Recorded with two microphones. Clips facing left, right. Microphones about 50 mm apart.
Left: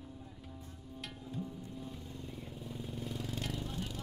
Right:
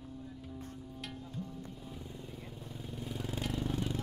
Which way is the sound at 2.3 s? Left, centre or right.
Centre.